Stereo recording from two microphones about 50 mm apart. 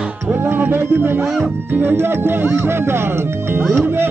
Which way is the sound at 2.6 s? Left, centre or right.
Right.